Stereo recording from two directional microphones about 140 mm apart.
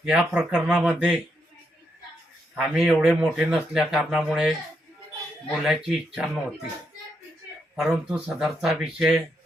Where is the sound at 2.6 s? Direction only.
5° right (ahead or behind).